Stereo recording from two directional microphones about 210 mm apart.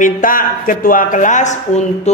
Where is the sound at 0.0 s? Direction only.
40° left (ahead or behind).